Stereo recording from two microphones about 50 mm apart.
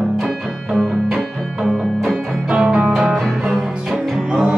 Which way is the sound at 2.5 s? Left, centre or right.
Right.